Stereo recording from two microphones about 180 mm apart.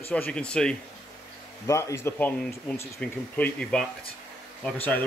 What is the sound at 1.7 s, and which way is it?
Speech, 15° left (ahead or behind).